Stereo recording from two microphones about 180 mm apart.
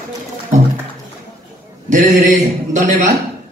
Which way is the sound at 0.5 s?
45° right (ahead or behind).